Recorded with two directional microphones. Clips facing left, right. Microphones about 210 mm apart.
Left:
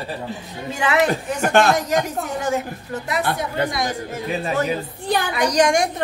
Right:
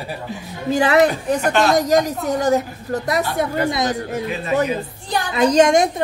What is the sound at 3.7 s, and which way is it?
Speech, 20° right (ahead or behind).